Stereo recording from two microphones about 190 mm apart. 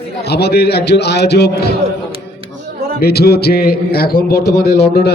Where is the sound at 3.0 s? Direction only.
55° left (ahead or behind).